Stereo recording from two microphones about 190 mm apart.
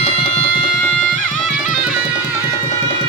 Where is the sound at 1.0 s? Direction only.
45° left (ahead or behind).